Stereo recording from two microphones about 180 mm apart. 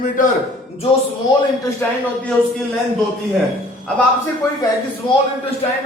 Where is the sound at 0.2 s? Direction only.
45° left (ahead or behind).